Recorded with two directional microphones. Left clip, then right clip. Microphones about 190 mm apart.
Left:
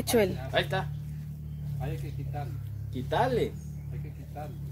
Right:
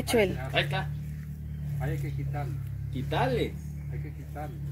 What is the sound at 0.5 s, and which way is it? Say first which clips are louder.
Speech: even; 40° left (ahead or behind).